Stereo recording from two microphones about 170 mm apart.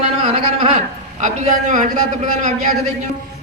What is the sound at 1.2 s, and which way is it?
Speech, 50° right (ahead or behind).